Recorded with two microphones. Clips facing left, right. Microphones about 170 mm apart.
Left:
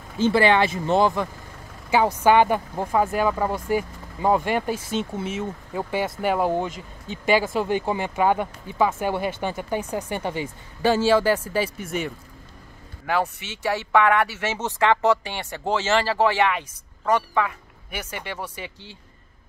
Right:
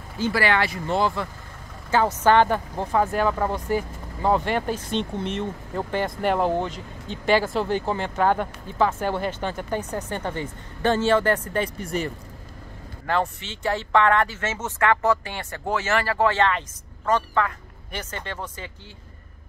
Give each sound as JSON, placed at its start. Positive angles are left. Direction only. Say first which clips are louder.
{"t": 0.2, "sound": "speech", "louder": "left 4 dB", "side_deg": 20}